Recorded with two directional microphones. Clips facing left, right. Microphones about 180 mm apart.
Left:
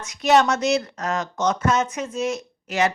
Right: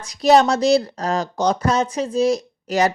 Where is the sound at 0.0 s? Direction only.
35° right (ahead or behind).